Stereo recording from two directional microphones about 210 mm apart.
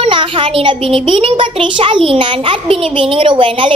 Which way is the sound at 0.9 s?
25° right (ahead or behind).